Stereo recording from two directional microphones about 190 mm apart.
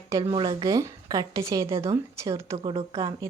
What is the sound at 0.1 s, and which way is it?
Speech, 25° right (ahead or behind).